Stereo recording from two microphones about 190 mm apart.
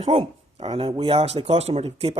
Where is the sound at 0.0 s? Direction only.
30° right (ahead or behind).